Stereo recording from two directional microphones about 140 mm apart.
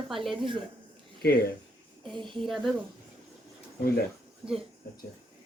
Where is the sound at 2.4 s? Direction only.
Centre (ahead or behind).